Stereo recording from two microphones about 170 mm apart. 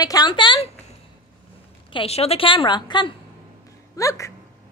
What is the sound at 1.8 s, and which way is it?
A woman's voice, 35° left (ahead or behind).